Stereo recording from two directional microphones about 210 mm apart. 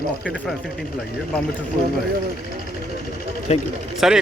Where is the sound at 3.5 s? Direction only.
30° left (ahead or behind).